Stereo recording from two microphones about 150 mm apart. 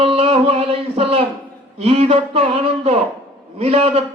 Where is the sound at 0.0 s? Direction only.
40° right (ahead or behind).